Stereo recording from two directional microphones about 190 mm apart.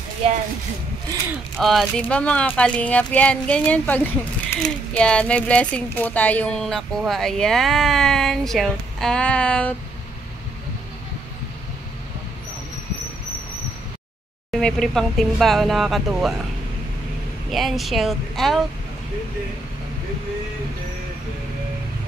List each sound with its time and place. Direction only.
0.2 s speech: 30° right (ahead or behind)
1.6 s speech: centre (ahead or behind)
14.5 s speech: centre (ahead or behind)
17.5 s speech: centre (ahead or behind)